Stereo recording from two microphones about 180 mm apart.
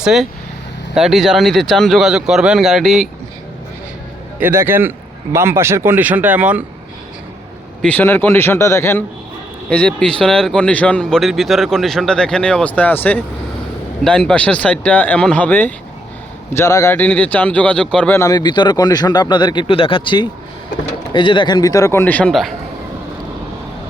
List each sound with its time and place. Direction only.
0.0 s speech: centre (ahead or behind)
4.4 s a man's voice: 10° right (ahead or behind)
7.8 s speech: 10° left (ahead or behind)
18.2 s a man's voice: 20° left (ahead or behind); by 22.5 s centre (ahead or behind)